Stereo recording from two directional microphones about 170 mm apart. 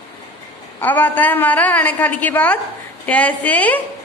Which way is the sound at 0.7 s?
10° left (ahead or behind).